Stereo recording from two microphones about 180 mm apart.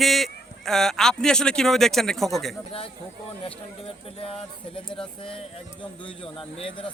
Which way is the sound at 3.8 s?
30° left (ahead or behind).